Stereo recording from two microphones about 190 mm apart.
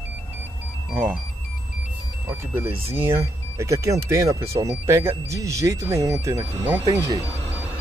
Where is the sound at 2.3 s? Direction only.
10° right (ahead or behind).